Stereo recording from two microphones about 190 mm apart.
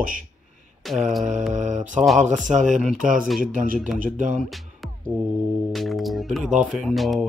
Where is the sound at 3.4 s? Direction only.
45° right (ahead or behind).